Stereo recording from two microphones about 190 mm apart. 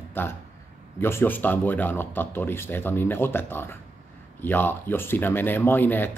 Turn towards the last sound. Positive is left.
turn(degrees=10)  # may be behind; listen again after turning